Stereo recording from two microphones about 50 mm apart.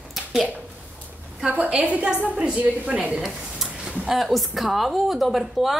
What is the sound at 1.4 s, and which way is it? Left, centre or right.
A woman's voice, right.